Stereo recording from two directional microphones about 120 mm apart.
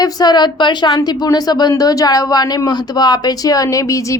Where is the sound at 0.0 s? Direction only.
35° left (ahead or behind).